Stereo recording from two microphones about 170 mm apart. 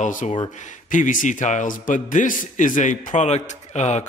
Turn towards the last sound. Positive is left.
turn(degrees=40)  # may be behind; listen again after turning